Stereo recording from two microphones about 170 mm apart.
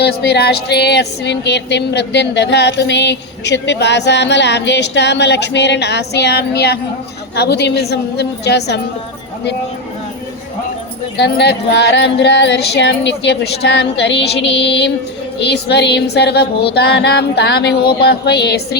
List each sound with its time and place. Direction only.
0.0 s music: 70° left (ahead or behind)
7.3 s a woman's voice: 80° left
11.2 s music: 85° left
15.4 s music: 80° left